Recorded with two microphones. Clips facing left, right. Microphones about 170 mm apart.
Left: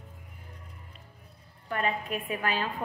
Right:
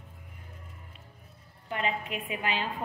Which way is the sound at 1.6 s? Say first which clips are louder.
Left 2 dB; 20° right (ahead or behind).